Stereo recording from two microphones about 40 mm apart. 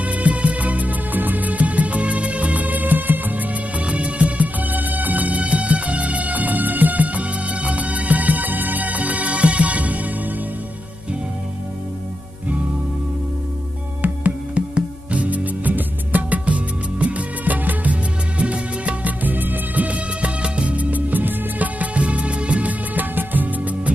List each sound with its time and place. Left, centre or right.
0.0 s music: right
3.8 s music: right
4.6 s music: right
14.0 s music: right
18.4 s music: right
19.2 s music: right
20.7 s music: right
23.1 s music: right